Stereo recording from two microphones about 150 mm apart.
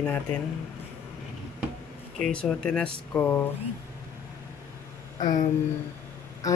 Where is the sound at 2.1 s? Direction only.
5° left (ahead or behind).